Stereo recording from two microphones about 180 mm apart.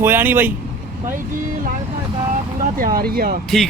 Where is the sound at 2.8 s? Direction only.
55° right (ahead or behind).